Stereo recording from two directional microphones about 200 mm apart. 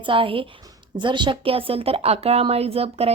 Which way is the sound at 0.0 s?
25° right (ahead or behind).